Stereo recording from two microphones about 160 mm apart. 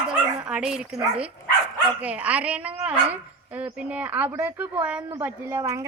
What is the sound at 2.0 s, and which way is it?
A woman's voice, 10° right (ahead or behind).